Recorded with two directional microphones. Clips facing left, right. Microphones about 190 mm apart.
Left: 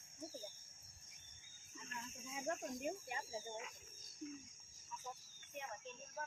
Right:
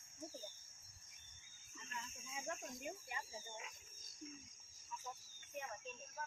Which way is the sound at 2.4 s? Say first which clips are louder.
Left 6 dB; 40° left (ahead or behind).